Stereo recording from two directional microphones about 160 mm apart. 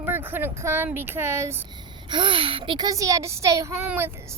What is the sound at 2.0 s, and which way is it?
Speech, 30° right (ahead or behind).